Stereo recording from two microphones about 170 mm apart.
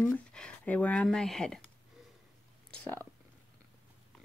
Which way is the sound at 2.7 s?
10° left (ahead or behind).